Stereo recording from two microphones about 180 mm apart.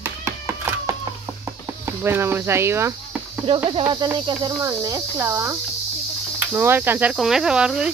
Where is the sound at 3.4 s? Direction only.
30° right (ahead or behind).